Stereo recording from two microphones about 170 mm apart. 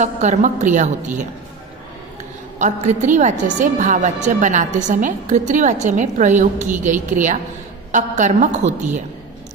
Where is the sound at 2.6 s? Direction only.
45° right (ahead or behind).